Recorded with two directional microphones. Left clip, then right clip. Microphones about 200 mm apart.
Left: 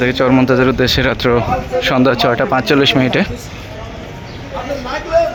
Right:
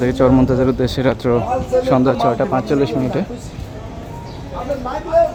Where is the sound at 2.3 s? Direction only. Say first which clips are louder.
Left 4 dB; 10° left (ahead or behind).